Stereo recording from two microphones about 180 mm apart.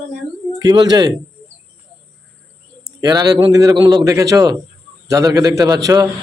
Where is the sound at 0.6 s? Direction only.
20° right (ahead or behind).